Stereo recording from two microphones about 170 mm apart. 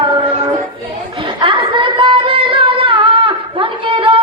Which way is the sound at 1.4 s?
30° right (ahead or behind).